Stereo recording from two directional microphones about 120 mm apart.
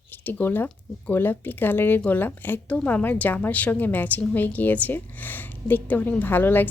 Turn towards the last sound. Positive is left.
turn(degrees=15)  # may be behind; listen again after turning